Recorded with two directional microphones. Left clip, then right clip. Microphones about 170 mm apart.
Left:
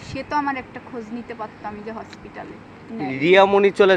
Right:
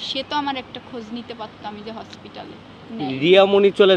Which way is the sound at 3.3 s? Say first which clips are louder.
Even; 35° right (ahead or behind).